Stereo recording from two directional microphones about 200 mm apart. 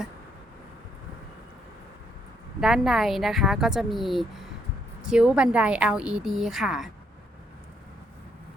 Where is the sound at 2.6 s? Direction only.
Centre (ahead or behind).